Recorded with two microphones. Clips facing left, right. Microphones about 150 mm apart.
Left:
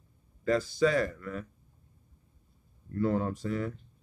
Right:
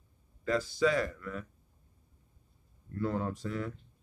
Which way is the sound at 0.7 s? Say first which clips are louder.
Left 2 dB; 45° left (ahead or behind).